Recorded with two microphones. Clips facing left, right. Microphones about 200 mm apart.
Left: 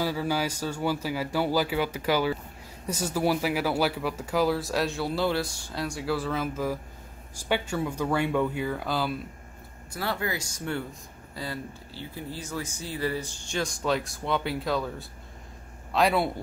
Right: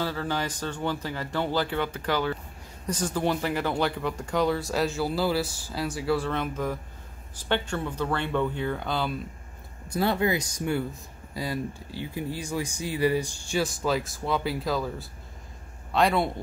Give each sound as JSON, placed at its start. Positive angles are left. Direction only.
{"t": 0.0, "sound": "speech", "side_deg": 10}
{"t": 9.8, "sound": "speech", "side_deg": -20}